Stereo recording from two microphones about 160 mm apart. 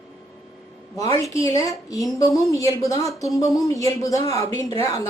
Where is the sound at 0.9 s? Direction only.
20° left (ahead or behind).